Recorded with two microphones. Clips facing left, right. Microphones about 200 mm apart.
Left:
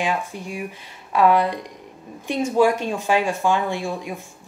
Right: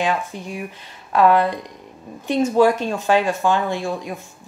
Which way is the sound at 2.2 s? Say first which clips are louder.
Right 3 dB; 10° left (ahead or behind).